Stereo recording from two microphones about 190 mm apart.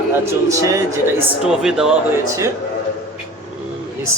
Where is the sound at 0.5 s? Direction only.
15° right (ahead or behind).